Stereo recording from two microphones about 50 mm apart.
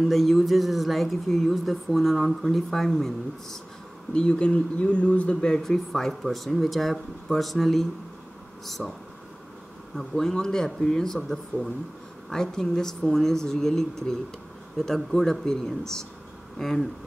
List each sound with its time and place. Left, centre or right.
0.0 s speech: centre
4.1 s speech: centre
5.6 s speech: centre
9.9 s speech: centre
12.3 s speech: centre